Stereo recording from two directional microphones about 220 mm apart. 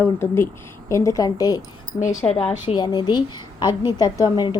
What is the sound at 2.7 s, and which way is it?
A woman's voice, 20° left (ahead or behind).